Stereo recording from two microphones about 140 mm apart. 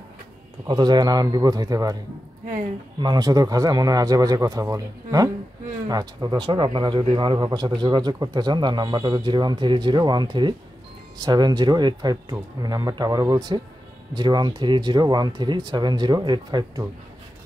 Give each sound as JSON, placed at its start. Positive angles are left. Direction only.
{"t": 0.7, "sound": "speech", "side_deg": -35}
{"t": 3.0, "sound": "speech", "side_deg": -30}